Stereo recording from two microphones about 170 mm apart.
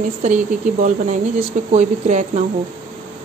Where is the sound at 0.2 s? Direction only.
45° right (ahead or behind).